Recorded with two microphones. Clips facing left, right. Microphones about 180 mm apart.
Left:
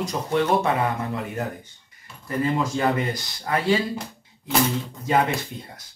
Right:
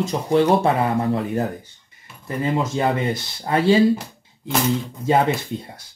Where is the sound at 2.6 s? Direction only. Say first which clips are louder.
Right 2 dB; 25° right (ahead or behind).